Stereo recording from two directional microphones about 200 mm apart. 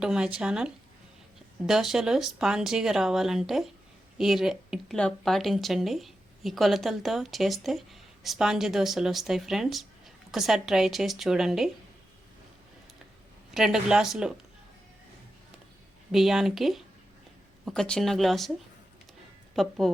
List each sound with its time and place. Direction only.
0.0 s speech: 5° right (ahead or behind)
13.5 s speech: centre (ahead or behind)
16.1 s speech: centre (ahead or behind)
19.5 s speech: centre (ahead or behind)